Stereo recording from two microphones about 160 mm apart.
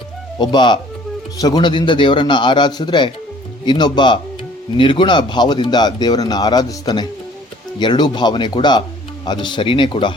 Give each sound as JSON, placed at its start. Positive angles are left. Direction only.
{"t": 0.3, "sound": "a man's voice", "side_deg": 30}